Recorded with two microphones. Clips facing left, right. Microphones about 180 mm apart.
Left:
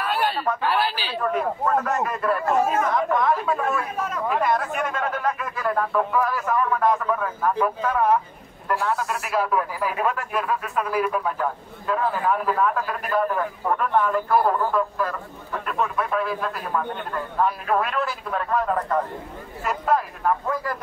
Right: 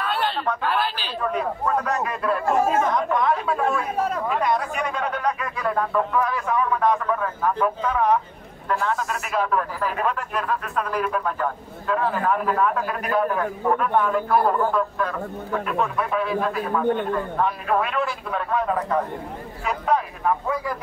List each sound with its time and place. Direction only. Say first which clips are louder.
0.0 s speech: left 1 dB; 5° left (ahead or behind)
3.9 s speech: right 4 dB; 35° right (ahead or behind)
4.3 s speech: even; centre (ahead or behind)